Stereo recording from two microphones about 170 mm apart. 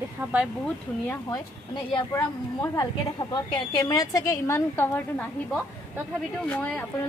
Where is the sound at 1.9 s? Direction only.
20° left (ahead or behind).